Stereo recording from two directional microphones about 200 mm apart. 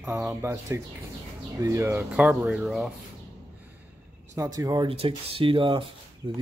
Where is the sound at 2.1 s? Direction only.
Centre (ahead or behind).